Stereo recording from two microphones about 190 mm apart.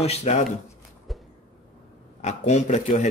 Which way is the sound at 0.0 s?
35° left (ahead or behind).